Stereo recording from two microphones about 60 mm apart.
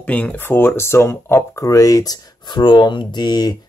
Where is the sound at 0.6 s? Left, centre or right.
Left.